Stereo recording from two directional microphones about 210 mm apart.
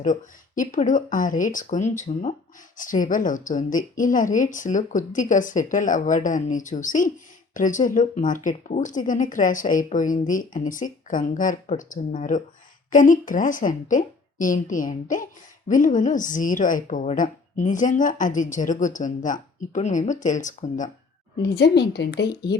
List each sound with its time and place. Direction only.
0.0 s a woman's voice: 35° left (ahead or behind)
21.4 s a woman's voice: 50° left (ahead or behind)